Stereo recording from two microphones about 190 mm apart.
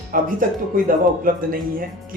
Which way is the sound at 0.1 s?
50° right (ahead or behind).